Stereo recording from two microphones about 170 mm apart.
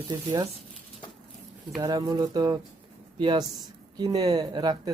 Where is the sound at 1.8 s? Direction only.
20° right (ahead or behind).